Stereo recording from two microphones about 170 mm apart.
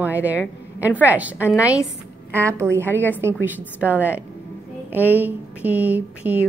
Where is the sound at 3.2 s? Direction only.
15° right (ahead or behind).